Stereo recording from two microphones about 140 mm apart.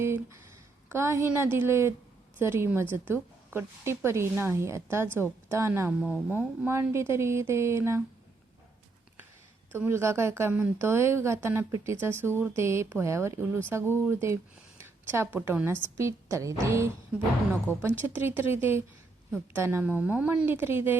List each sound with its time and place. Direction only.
0.0 s a woman's voice: 20° right (ahead or behind)
6.0 s speech: 10° left (ahead or behind)
6.3 s a woman's voice: 15° right (ahead or behind)
9.7 s a woman's voice: 15° right (ahead or behind)
17.7 s speech: 15° left (ahead or behind)
18.1 s speech: 15° right (ahead or behind)